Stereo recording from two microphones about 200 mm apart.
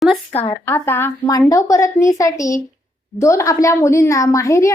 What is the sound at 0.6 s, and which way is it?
A woman's voice, 10° left (ahead or behind).